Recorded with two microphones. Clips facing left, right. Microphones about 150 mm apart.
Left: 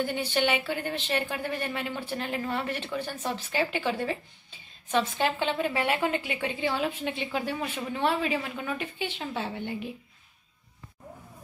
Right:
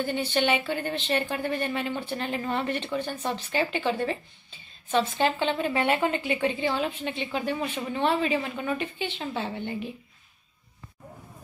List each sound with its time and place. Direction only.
0.0 s a woman's voice: 10° left (ahead or behind)